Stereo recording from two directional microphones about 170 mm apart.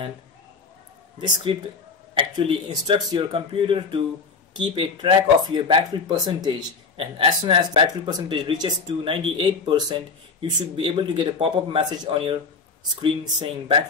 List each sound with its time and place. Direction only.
1.2 s speech: 30° right (ahead or behind)